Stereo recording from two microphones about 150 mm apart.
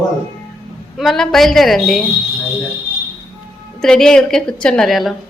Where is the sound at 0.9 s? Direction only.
Centre (ahead or behind).